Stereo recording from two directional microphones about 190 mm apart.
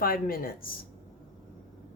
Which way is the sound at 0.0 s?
50° left (ahead or behind).